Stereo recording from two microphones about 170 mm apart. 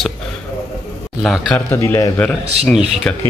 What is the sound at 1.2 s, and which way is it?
Speech, centre (ahead or behind).